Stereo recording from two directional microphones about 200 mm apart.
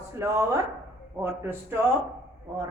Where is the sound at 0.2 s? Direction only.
15° right (ahead or behind).